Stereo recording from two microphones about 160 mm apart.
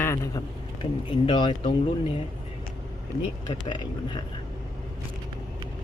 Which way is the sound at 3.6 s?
30° left (ahead or behind).